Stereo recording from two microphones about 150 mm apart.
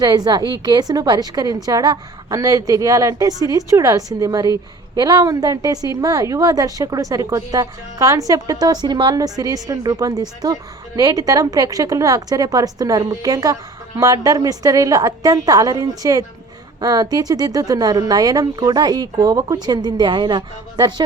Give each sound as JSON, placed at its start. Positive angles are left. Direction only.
{"t": 0.0, "sound": "a woman's voice", "side_deg": -25}